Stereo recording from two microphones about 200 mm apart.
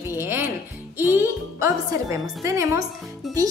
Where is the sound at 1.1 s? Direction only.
15° right (ahead or behind).